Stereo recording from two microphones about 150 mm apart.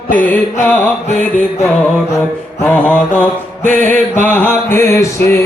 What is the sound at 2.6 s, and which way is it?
Mantra, 10° left (ahead or behind).